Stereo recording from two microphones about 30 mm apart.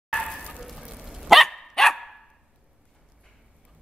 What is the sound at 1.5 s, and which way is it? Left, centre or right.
Dog, centre.